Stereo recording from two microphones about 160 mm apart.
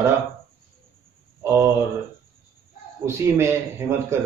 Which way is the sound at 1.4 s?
15° right (ahead or behind).